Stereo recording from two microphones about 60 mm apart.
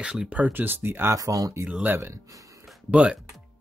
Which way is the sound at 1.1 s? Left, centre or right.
Right.